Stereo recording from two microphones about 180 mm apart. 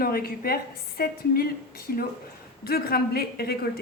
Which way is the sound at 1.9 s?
55° left (ahead or behind).